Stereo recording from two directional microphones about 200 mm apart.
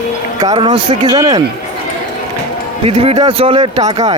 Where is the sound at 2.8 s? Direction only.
30° right (ahead or behind).